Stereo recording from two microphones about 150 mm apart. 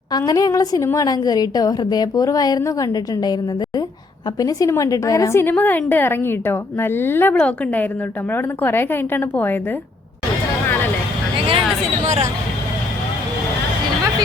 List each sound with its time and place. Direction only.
0.1 s a woman's voice: 25° left (ahead or behind)
4.4 s a woman's voice: 25° left (ahead or behind)
12.0 s speech: 50° right (ahead or behind)